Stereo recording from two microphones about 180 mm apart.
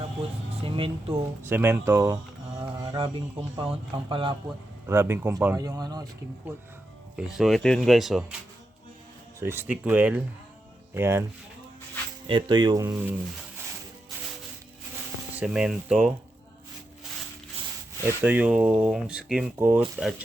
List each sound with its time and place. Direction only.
0.6 s speech: 30° right (ahead or behind)
1.4 s speech: 10° right (ahead or behind)
2.7 s mantra: 25° right (ahead or behind)
3.6 s speech: 30° right (ahead or behind)
4.9 s speech: 15° right (ahead or behind)
7.2 s speech: centre (ahead or behind)
9.4 s speech: 15° right (ahead or behind)
12.3 s speech: 25° right (ahead or behind)
15.4 s speech: 5° right (ahead or behind)
18.2 s speech: 10° right (ahead or behind)